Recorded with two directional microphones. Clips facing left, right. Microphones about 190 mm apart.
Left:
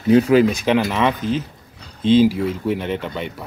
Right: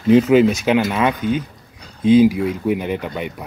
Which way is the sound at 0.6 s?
5° right (ahead or behind).